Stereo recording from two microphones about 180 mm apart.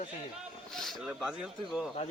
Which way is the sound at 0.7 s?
Centre (ahead or behind).